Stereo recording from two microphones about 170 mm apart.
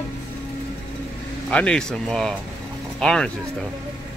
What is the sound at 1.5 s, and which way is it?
Speech, 5° left (ahead or behind).